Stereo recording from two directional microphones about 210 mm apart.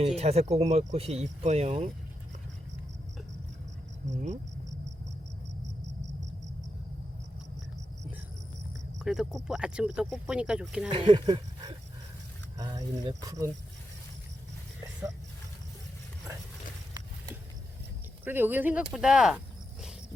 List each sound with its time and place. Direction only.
0.2 s speech: 30° right (ahead or behind)
4.1 s speech: 35° right (ahead or behind)
9.0 s speech: centre (ahead or behind)
10.8 s speech: 25° right (ahead or behind)
18.3 s speech: 10° right (ahead or behind)